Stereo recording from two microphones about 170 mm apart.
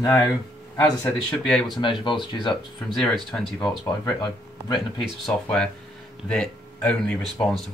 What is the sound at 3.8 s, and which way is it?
Speech, 25° left (ahead or behind).